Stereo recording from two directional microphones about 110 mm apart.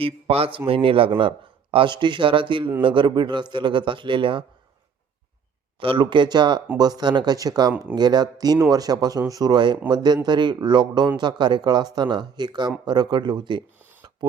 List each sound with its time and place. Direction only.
0.0 s a man's voice: 60° right (ahead or behind)
5.8 s a man's voice: 50° right (ahead or behind)